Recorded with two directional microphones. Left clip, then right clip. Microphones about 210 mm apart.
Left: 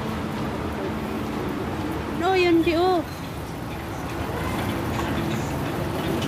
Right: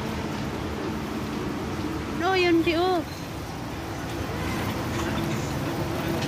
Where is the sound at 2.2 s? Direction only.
5° left (ahead or behind).